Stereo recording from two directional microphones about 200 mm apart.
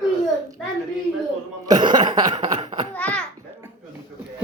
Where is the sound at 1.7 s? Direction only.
20° right (ahead or behind).